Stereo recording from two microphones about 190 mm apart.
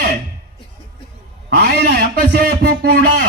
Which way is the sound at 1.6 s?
55° right (ahead or behind).